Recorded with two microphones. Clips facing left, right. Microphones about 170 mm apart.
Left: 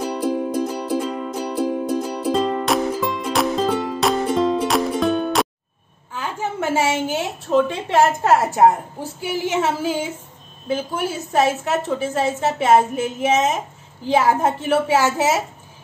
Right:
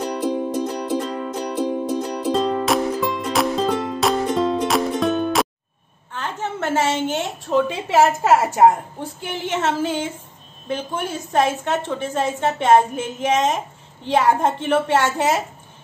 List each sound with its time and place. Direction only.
0.0 s music: 5° left (ahead or behind)
6.1 s a woman's voice: 10° left (ahead or behind)